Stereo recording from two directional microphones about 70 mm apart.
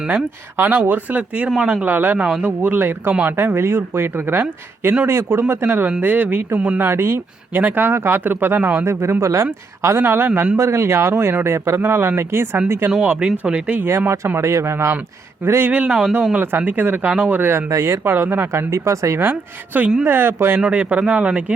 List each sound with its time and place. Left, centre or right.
0.5 s speech: right
13.0 s speech: centre
14.3 s speech: right
15.7 s speech: centre
17.7 s speech: right
18.1 s speech: right
18.7 s speech: right
19.2 s speech: right
20.6 s speech: centre